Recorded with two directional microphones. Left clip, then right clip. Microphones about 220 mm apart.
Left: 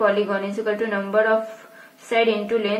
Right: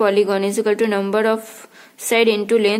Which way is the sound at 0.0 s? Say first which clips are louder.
Right 4 dB; 40° right (ahead or behind).